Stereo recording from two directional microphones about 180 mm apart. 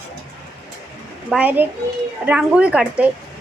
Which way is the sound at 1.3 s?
10° right (ahead or behind).